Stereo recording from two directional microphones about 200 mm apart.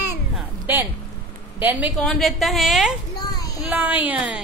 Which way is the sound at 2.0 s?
Centre (ahead or behind).